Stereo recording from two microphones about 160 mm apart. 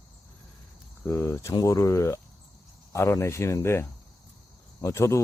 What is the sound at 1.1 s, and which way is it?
Speech, 15° left (ahead or behind).